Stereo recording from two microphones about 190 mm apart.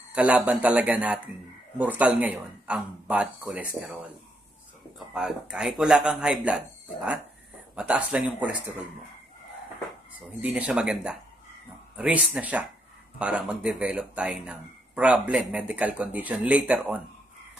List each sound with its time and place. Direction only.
0.1 s speech: 5° right (ahead or behind)
4.9 s speech: centre (ahead or behind)
10.4 s speech: 5° right (ahead or behind)